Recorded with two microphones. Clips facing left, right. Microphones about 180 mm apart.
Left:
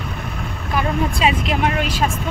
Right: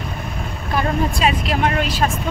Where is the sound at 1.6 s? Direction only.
10° left (ahead or behind).